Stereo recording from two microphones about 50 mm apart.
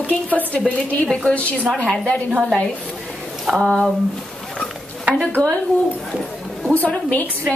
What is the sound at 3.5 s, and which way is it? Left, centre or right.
Speech, centre.